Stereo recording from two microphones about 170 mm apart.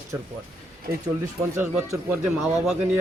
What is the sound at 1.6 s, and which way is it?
Speech, 15° right (ahead or behind).